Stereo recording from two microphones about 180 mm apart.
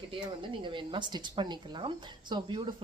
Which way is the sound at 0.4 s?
25° right (ahead or behind).